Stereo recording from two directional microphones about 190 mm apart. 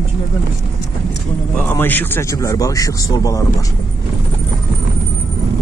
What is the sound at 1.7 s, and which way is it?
Speech, 10° left (ahead or behind).